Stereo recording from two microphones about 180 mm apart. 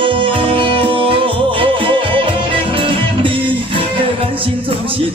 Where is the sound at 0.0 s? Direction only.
30° right (ahead or behind).